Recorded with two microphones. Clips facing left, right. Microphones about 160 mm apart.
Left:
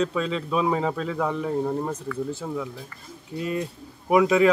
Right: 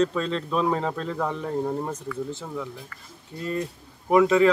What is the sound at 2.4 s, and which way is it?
Speech, 5° left (ahead or behind).